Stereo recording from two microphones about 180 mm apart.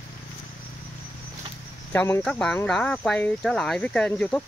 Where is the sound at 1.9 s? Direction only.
10° left (ahead or behind).